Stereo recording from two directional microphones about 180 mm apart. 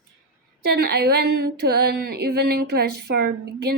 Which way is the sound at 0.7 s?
65° right (ahead or behind).